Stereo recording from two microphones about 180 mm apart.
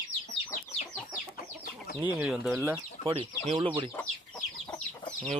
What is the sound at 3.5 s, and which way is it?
Speech, 25° right (ahead or behind).